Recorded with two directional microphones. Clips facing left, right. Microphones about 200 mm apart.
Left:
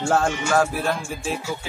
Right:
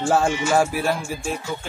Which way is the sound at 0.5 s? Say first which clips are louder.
Even; 10° right (ahead or behind).